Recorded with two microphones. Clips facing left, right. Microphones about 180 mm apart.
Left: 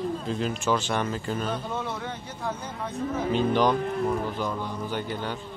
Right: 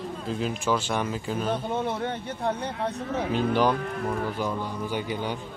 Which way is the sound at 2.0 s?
60° right (ahead or behind).